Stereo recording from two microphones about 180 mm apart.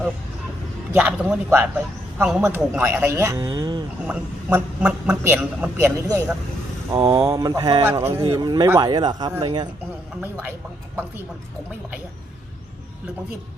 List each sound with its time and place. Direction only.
0.9 s speech: 5° right (ahead or behind)
4.0 s a man's voice: 5° right (ahead or behind); by 9.6 s 25° right (ahead or behind)